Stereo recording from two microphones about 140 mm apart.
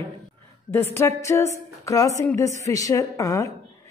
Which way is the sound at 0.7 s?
15° left (ahead or behind).